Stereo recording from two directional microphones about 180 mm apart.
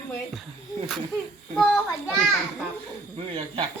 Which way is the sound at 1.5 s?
Centre (ahead or behind).